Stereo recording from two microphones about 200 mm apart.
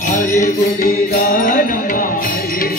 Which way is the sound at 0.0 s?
40° left (ahead or behind).